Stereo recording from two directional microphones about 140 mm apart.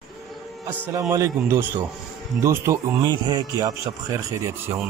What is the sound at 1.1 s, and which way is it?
A man's voice, 20° right (ahead or behind).